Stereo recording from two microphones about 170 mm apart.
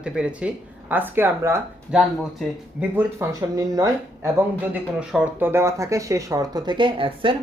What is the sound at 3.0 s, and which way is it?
Speech, 15° right (ahead or behind).